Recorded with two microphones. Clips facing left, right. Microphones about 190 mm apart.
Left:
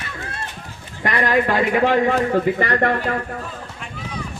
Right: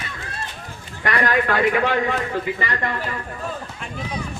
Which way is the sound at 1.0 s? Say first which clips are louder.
Left 2 dB; 25° left (ahead or behind).